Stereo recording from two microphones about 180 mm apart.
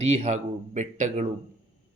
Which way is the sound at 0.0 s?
35° right (ahead or behind).